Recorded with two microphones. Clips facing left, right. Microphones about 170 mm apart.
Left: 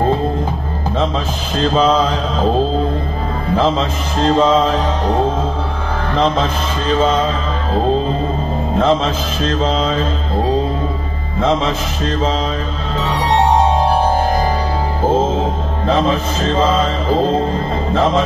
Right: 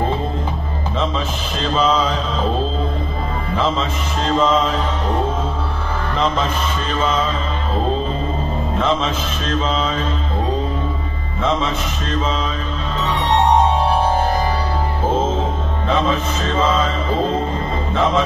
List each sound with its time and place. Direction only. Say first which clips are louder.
1.6 s music: left 4 dB; 40° left (ahead or behind)
3.5 s music: left 5 dB; 35° left (ahead or behind)
6.9 s music: left 7 dB; 35° left (ahead or behind)
8.7 s music: left 5 dB; 35° left (ahead or behind)
11.3 s a man's voice: left 4 dB; 35° left (ahead or behind)
15.9 s music: left 3 dB; 35° left (ahead or behind)